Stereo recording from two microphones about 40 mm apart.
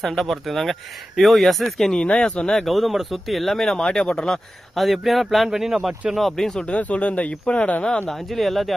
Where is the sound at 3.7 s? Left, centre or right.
Left.